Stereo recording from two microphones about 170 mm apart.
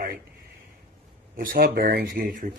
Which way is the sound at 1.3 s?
55° right (ahead or behind).